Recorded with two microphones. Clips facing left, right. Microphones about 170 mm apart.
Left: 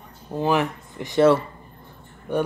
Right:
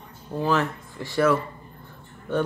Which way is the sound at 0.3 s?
15° left (ahead or behind).